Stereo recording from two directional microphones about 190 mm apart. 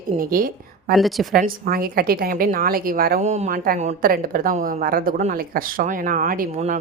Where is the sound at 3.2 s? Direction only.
35° right (ahead or behind).